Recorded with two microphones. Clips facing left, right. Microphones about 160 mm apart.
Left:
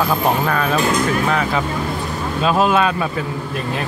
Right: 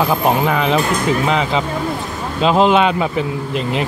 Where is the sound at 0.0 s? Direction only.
20° right (ahead or behind).